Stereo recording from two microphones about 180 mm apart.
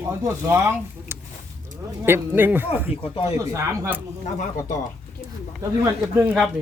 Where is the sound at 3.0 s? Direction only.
30° left (ahead or behind).